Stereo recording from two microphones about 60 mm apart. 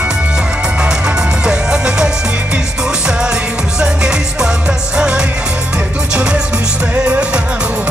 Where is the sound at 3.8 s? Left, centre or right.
Centre.